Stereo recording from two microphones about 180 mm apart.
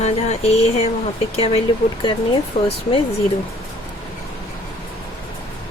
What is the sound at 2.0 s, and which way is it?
Speech, 30° left (ahead or behind).